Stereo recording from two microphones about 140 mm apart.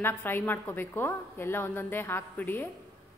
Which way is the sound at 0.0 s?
15° left (ahead or behind).